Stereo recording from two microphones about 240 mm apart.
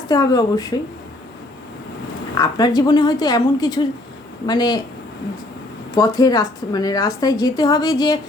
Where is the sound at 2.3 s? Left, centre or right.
Centre.